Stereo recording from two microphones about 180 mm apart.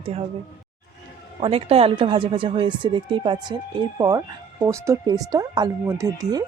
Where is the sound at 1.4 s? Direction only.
35° right (ahead or behind).